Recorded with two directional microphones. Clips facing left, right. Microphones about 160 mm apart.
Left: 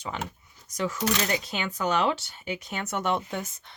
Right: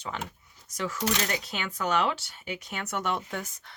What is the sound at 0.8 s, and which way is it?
Speech, 20° left (ahead or behind).